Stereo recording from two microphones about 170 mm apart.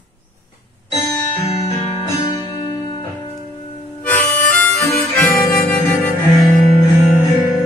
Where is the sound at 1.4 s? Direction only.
35° left (ahead or behind).